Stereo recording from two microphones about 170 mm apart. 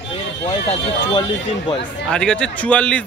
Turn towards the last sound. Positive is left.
turn(degrees=5)  # may be behind; listen again after turning